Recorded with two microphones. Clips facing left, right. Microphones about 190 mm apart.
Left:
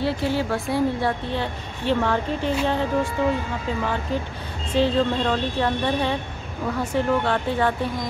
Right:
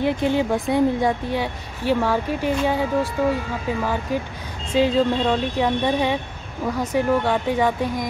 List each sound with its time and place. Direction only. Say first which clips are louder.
0.0 s a woman's voice: right 3 dB; 20° right (ahead or behind)